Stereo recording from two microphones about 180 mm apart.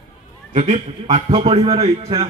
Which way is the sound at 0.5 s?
35° right (ahead or behind).